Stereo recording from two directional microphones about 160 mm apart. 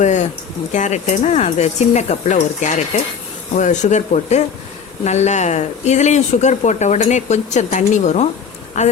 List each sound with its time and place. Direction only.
0.0 s speech: 50° left (ahead or behind)